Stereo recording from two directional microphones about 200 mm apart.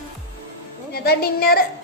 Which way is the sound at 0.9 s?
50° left (ahead or behind).